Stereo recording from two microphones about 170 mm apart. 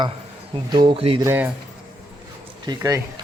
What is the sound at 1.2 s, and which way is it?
Speech, 10° right (ahead or behind).